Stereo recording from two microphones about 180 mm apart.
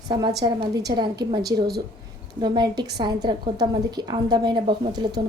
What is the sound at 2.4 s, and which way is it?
A woman's voice, 25° right (ahead or behind).